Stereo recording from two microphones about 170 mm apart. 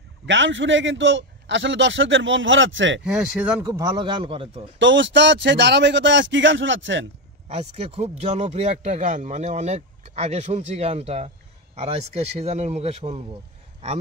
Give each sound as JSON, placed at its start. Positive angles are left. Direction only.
{"t": 0.3, "sound": "a man's voice", "side_deg": -90}
{"t": 3.1, "sound": "speech", "side_deg": -5}
{"t": 3.6, "sound": "a man's voice", "side_deg": -20}
{"t": 4.7, "sound": "a man's voice", "side_deg": -90}
{"t": 7.4, "sound": "speech", "side_deg": -35}